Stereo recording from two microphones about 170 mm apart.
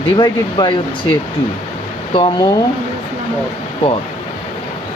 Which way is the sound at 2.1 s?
30° left (ahead or behind).